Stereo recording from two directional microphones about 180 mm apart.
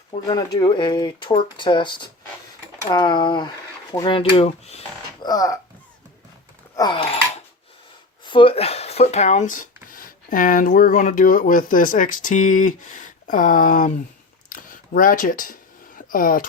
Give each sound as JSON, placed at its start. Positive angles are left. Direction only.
{"t": 0.3, "sound": "speech", "side_deg": 25}
{"t": 5.2, "sound": "speech", "side_deg": 20}
{"t": 6.7, "sound": "speech", "side_deg": 25}
{"t": 8.2, "sound": "speech", "side_deg": 25}
{"t": 14.5, "sound": "a sound", "side_deg": 50}